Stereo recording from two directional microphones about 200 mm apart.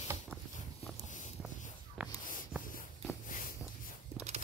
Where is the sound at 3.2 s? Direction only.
45° left (ahead or behind).